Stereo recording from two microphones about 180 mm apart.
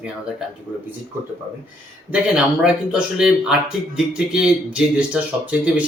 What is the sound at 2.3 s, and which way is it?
Speech, 5° right (ahead or behind).